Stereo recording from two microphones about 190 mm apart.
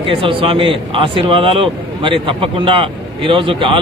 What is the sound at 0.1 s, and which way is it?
Speech, 30° right (ahead or behind).